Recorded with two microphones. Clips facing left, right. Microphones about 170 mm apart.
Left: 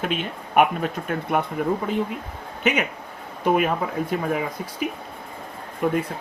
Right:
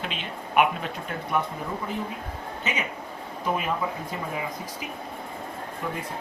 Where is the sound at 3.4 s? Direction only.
65° left (ahead or behind).